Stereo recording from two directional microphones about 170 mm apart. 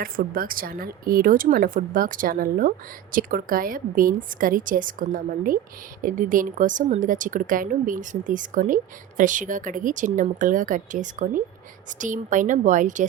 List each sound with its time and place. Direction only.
0.0 s a woman's voice: 55° right (ahead or behind)